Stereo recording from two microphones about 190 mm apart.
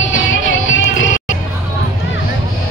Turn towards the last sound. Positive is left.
turn(degrees=85)